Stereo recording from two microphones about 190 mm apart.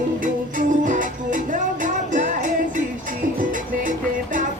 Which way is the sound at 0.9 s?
45° right (ahead or behind).